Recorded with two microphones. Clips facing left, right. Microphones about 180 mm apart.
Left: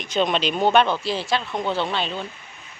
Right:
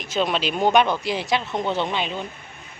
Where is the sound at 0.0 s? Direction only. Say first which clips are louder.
Left 1 dB; 5° right (ahead or behind).